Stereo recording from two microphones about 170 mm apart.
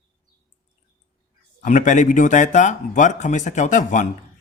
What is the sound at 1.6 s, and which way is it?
Speech, 45° left (ahead or behind).